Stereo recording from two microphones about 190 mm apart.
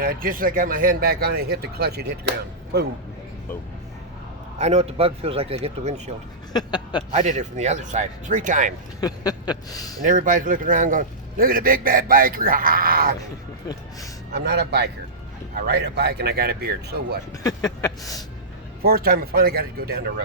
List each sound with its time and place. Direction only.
0.0 s a man's voice: 50° right (ahead or behind)
4.5 s speech: 35° right (ahead or behind)
6.5 s a sound: 20° left (ahead or behind)
7.1 s speech: 35° right (ahead or behind)
9.0 s a sound: 20° left (ahead or behind)
10.0 s a man's voice: 45° right (ahead or behind)
14.3 s speech: 60° right (ahead or behind)
17.4 s a sound: 20° left (ahead or behind)
18.8 s a man's voice: 50° right (ahead or behind)